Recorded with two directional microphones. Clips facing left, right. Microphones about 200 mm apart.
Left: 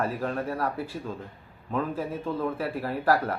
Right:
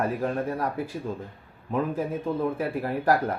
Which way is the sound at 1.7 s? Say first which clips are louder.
Right 2 dB; 15° right (ahead or behind).